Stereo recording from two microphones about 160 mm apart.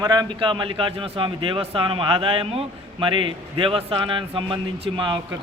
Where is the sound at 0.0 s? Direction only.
25° right (ahead or behind).